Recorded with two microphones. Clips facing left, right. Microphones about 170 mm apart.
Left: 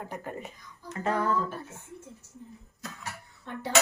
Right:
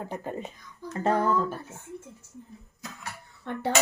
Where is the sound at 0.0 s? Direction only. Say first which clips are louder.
Right 3 dB; 25° right (ahead or behind).